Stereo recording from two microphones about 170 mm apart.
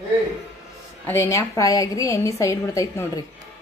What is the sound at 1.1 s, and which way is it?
A woman's voice, 15° left (ahead or behind).